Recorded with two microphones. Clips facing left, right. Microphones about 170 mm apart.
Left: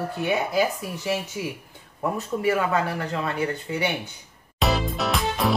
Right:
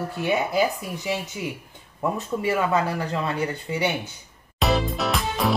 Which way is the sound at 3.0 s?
20° right (ahead or behind).